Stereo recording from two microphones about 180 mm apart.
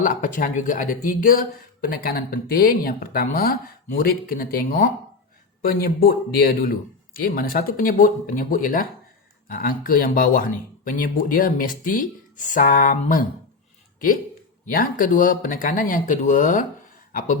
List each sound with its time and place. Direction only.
0.0 s speech: 45° left (ahead or behind)
14.7 s speech: 50° left (ahead or behind)